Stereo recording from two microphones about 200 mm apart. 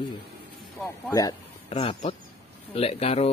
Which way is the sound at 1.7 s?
30° left (ahead or behind).